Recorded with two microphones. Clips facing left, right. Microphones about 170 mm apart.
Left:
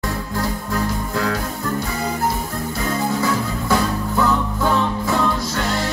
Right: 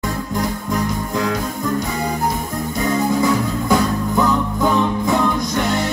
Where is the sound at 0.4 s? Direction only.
15° right (ahead or behind).